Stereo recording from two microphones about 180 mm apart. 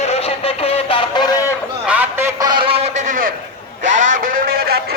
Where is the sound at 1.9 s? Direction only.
10° right (ahead or behind).